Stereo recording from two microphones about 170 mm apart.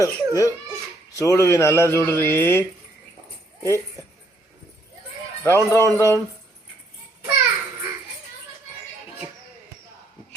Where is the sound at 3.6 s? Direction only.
15° left (ahead or behind).